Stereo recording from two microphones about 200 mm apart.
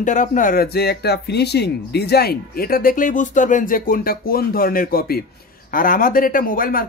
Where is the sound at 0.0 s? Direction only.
40° left (ahead or behind).